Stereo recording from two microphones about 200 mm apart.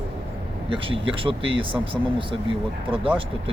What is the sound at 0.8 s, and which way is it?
Speech, 25° right (ahead or behind).